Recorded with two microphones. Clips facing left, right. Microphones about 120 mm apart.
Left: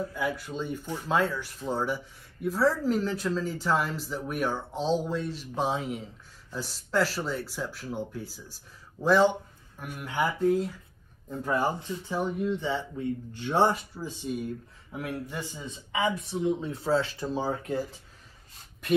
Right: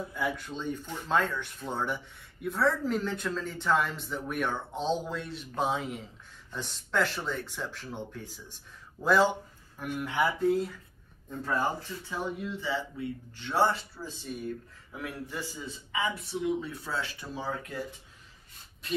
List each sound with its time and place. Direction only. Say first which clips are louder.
0.1 s speech: left 2 dB; 5° left (ahead or behind)
11.2 s speech: left 3 dB; 15° left (ahead or behind); by 17.8 s 30° left (ahead or behind)